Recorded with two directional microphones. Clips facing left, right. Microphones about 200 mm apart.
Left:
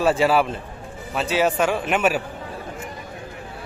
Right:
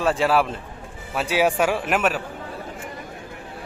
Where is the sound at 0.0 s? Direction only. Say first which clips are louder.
Left 2 dB; 5° left (ahead or behind).